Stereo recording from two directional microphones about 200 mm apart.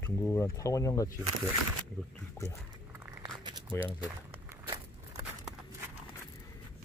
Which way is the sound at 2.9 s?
15° right (ahead or behind).